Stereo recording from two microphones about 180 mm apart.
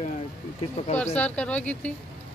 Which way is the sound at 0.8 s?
35° left (ahead or behind).